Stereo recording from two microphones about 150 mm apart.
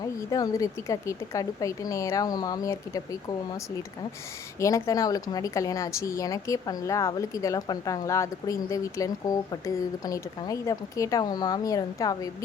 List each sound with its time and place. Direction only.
0.0 s speech: 25° left (ahead or behind)
4.6 s speech: 20° left (ahead or behind)